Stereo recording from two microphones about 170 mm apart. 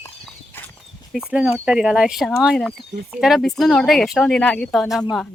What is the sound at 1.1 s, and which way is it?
Speech, 5° right (ahead or behind).